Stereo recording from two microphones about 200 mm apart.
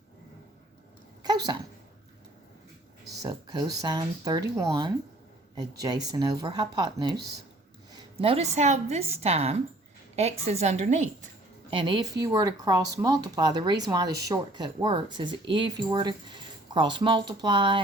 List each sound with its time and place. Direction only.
1.2 s a sound: 20° right (ahead or behind)
3.2 s a woman's voice: 20° right (ahead or behind); by 11.1 s 35° right (ahead or behind)
11.7 s speech: 25° right (ahead or behind)